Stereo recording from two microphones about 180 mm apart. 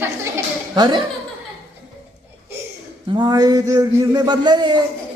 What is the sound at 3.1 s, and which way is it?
A man's voice, 20° right (ahead or behind).